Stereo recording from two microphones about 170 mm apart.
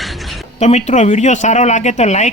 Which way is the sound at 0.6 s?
45° left (ahead or behind).